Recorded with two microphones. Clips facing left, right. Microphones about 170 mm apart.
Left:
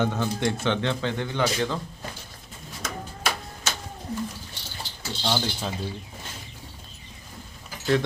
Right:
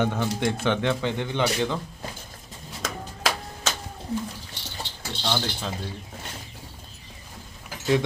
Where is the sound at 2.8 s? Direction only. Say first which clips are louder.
Right 2 dB; 90° right.